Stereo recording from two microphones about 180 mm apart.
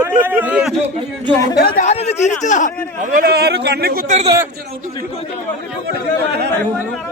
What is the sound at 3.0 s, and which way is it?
Speech, 50° right (ahead or behind).